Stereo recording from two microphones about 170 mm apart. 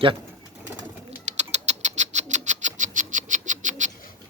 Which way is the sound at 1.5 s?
40° right (ahead or behind).